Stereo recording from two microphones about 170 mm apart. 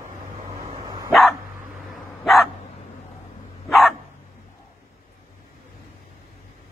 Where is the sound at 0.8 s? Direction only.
25° right (ahead or behind).